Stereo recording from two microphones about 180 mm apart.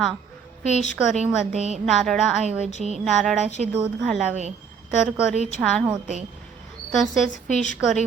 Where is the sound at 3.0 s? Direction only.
Centre (ahead or behind).